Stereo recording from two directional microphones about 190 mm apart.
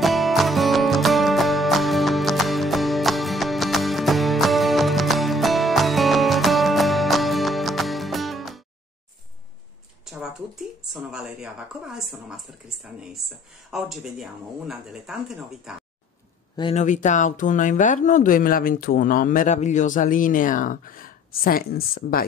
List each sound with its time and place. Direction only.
0.0 s music: centre (ahead or behind)
10.0 s speech: 5° right (ahead or behind)
16.7 s speech: 40° left (ahead or behind)